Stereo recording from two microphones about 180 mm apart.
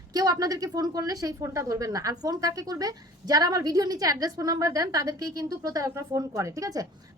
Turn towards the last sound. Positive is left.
turn(degrees=-20)  # may be behind; listen again after turning